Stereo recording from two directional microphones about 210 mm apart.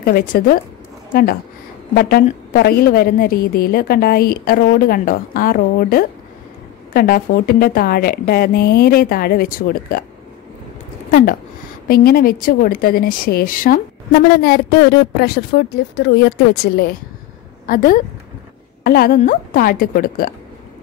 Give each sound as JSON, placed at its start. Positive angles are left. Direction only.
{"t": 0.0, "sound": "a woman's voice", "side_deg": 45}
{"t": 2.0, "sound": "a woman's voice", "side_deg": 45}
{"t": 11.1, "sound": "a woman's voice", "side_deg": 45}